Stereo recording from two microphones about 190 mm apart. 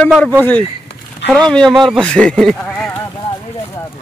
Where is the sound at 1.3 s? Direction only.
5° left (ahead or behind).